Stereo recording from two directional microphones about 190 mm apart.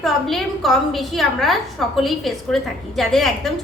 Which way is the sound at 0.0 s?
Centre (ahead or behind).